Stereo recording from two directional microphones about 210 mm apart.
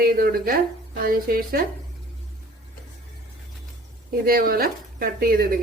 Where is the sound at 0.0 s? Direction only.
45° right (ahead or behind).